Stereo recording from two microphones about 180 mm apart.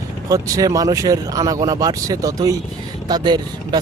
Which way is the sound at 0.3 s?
20° right (ahead or behind).